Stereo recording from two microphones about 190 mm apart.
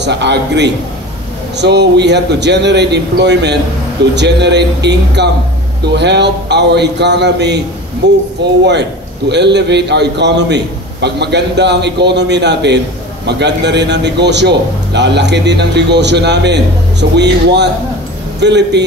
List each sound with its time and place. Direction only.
0.0 s a man's voice: 65° right (ahead or behind)